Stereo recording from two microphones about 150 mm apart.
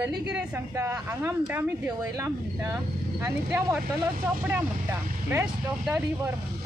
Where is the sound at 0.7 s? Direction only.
20° right (ahead or behind).